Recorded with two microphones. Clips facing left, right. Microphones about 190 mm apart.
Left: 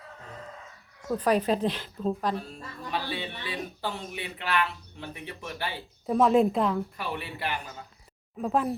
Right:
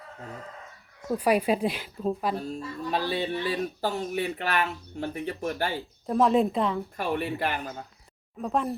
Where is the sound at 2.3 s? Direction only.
40° right (ahead or behind).